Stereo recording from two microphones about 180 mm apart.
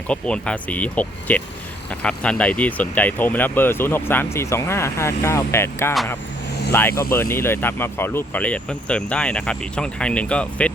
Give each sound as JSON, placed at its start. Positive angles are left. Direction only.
{"t": 0.1, "sound": "speech", "side_deg": 5}